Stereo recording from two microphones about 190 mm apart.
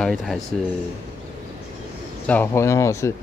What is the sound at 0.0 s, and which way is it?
Speech, centre (ahead or behind).